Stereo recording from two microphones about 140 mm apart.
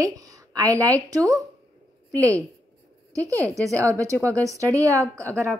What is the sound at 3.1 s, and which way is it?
A woman's voice, 20° right (ahead or behind).